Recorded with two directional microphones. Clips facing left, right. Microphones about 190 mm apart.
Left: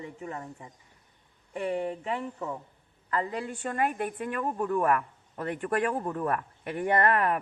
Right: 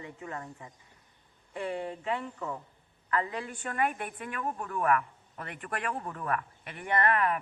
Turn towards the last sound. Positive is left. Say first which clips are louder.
# left 3 dB
turn(degrees=45)  # may be behind; listen again after turning